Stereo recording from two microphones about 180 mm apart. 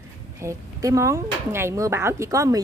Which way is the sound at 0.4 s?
15° right (ahead or behind).